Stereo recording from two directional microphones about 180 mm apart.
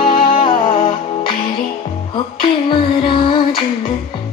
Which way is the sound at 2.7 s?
25° left (ahead or behind).